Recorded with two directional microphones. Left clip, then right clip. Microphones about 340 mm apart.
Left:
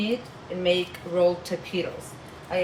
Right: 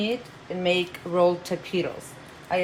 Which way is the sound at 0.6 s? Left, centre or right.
Centre.